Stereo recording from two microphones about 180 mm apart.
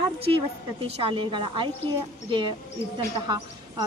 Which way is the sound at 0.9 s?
30° right (ahead or behind).